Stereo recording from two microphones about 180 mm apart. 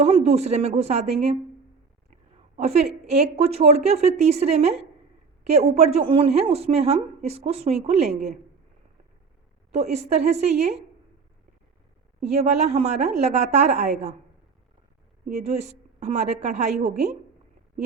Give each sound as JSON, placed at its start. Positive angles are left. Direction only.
{"t": 0.0, "sound": "a woman's voice", "side_deg": -35}
{"t": 2.6, "sound": "a woman's voice", "side_deg": -35}
{"t": 9.7, "sound": "a woman's voice", "side_deg": -40}
{"t": 12.3, "sound": "a woman's voice", "side_deg": -40}
{"t": 15.3, "sound": "a woman's voice", "side_deg": -40}